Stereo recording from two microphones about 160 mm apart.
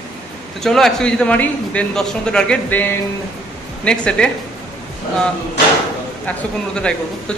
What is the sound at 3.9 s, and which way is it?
Speech, 5° left (ahead or behind).